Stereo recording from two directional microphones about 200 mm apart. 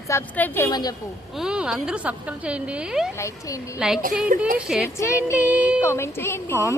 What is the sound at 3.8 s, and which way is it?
Speech, 5° right (ahead or behind).